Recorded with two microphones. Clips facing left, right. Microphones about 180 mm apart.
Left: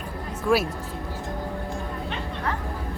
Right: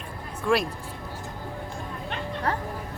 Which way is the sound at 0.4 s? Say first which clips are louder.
Left 2 dB; 5° left (ahead or behind).